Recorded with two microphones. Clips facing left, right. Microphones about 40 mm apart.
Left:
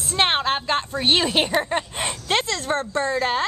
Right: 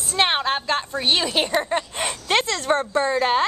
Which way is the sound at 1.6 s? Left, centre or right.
Centre.